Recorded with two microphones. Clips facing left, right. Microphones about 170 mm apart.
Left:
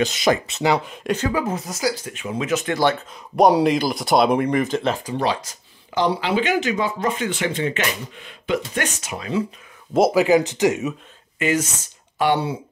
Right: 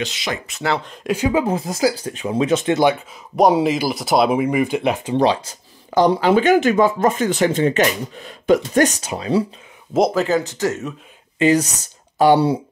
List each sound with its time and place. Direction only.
0.0 s speech: 45° left (ahead or behind)
0.5 s speech: 20° left (ahead or behind)
1.1 s speech: 15° right (ahead or behind)
1.7 s speech: 35° right (ahead or behind); by 3.0 s 20° right (ahead or behind)
3.3 s speech: centre (ahead or behind)
5.0 s speech: 30° right (ahead or behind)
5.9 s speech: 45° right (ahead or behind)
9.9 s speech: 5° left (ahead or behind)
11.3 s speech: 35° right (ahead or behind)